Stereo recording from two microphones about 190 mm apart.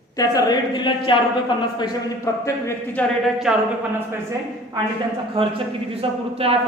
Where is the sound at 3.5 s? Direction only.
Centre (ahead or behind).